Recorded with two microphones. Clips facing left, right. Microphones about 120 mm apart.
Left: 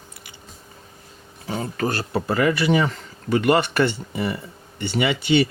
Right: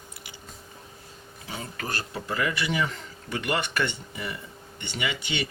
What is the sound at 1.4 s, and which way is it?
Speech, 50° left (ahead or behind).